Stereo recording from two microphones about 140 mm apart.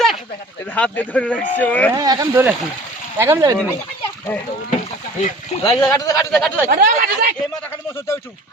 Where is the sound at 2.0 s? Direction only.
25° right (ahead or behind).